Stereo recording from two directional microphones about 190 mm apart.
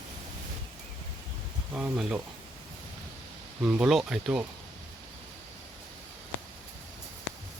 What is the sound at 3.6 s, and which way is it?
Speech, 5° right (ahead or behind).